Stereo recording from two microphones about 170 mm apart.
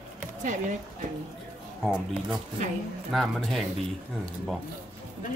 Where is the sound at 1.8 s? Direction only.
5° right (ahead or behind).